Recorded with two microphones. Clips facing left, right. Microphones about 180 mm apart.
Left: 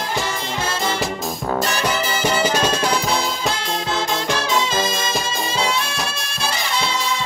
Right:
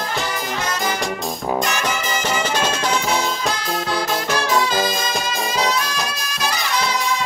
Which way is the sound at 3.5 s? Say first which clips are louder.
Right 1 dB; 25° left (ahead or behind).